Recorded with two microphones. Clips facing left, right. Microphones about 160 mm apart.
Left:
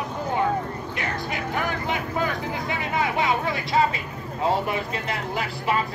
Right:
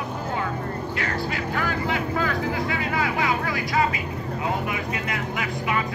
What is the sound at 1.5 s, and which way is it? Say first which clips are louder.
Vehicle: right 1 dB; 20° left (ahead or behind).